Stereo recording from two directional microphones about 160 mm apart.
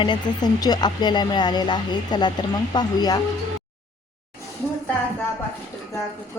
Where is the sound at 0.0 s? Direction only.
25° left (ahead or behind).